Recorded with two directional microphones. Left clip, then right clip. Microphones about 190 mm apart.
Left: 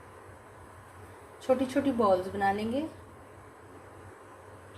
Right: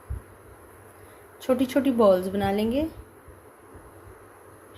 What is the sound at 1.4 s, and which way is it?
A woman's voice, 55° right (ahead or behind).